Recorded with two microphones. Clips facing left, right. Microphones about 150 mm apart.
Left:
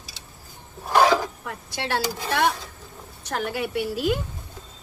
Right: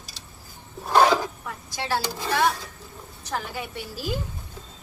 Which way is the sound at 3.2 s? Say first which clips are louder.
Left 4 dB; 75° left (ahead or behind).